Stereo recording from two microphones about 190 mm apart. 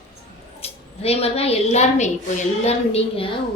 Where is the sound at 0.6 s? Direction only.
30° left (ahead or behind).